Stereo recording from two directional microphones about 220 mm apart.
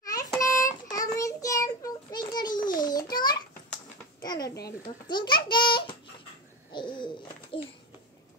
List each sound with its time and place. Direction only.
0.0 s a sound: 15° left (ahead or behind)
0.4 s child singing: 15° left (ahead or behind)
2.8 s babbling: 20° left (ahead or behind)
4.2 s a sound: 15° left (ahead or behind)
4.6 s a child's voice: 20° left (ahead or behind)
6.7 s bird: 20° left (ahead or behind)
7.5 s babbling: 25° left (ahead or behind)